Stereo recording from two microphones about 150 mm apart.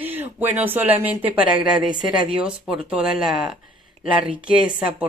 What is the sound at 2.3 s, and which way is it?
Speech, 5° right (ahead or behind).